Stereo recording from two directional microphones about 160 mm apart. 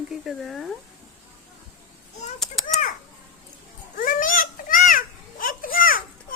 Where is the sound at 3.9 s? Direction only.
60° left (ahead or behind).